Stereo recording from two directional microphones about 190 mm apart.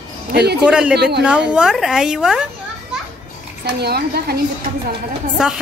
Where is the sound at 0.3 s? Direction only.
60° right (ahead or behind).